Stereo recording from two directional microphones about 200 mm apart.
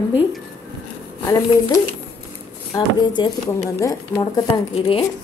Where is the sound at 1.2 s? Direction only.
15° left (ahead or behind).